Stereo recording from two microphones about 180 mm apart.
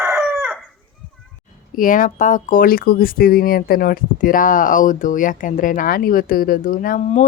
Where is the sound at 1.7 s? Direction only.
50° left (ahead or behind).